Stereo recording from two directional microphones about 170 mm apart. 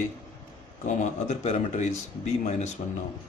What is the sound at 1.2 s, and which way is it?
Speech, 40° left (ahead or behind).